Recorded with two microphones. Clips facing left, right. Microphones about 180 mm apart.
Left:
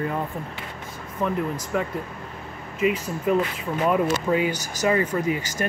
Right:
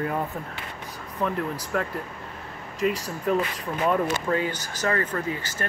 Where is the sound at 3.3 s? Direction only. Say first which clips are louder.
Left 2 dB; 5° left (ahead or behind).